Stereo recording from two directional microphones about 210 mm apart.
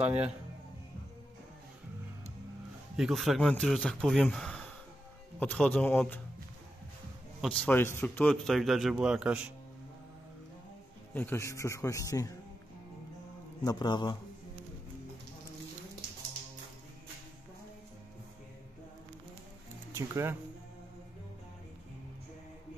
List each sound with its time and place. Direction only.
0.0 s a man's voice: 5° right (ahead or behind)
3.0 s speech: centre (ahead or behind)
7.4 s speech: 5° left (ahead or behind)
11.1 s speech: 10° left (ahead or behind)
13.7 s a man's voice: 20° left (ahead or behind)
19.9 s speech: 15° right (ahead or behind)